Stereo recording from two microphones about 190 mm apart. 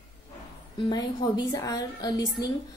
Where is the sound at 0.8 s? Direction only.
20° left (ahead or behind).